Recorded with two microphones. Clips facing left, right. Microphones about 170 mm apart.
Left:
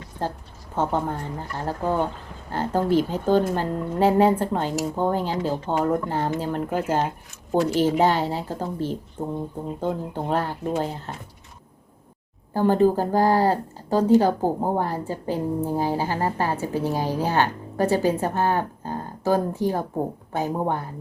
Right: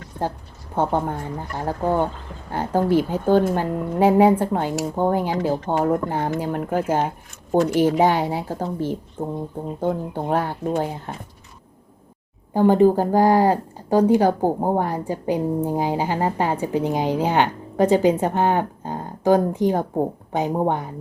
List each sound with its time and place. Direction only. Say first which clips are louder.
0.8 s speech: right 2 dB; 15° right (ahead or behind)
10.2 s speech: right 2 dB; 10° right (ahead or behind)
12.5 s speech: right 4 dB; 15° right (ahead or behind)